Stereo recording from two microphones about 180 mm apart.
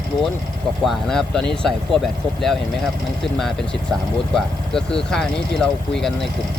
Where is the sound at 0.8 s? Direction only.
5° left (ahead or behind).